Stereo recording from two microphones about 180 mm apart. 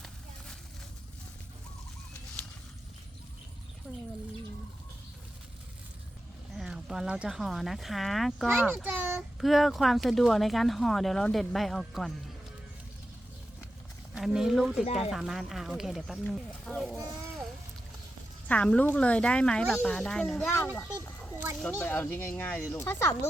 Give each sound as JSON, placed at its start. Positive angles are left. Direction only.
{"t": 3.9, "sound": "a sound", "side_deg": 0}
{"t": 6.5, "sound": "a child's voice", "side_deg": 0}
{"t": 14.2, "sound": "speech", "side_deg": 0}
{"t": 18.4, "sound": "speech", "side_deg": 5}
{"t": 20.7, "sound": "speech", "side_deg": 15}